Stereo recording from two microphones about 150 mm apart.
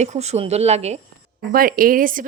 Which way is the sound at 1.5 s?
70° right (ahead or behind).